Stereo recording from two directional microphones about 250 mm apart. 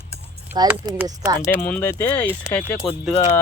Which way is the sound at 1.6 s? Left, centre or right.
Centre.